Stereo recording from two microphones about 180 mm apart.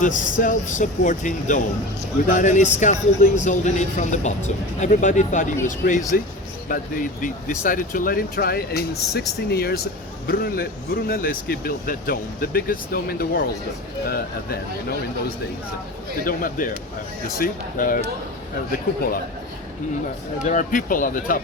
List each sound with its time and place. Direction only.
0.0 s a man's voice: 45° left (ahead or behind)
16.2 s a man's voice: 50° left (ahead or behind)
20.4 s a man's voice: 45° left (ahead or behind)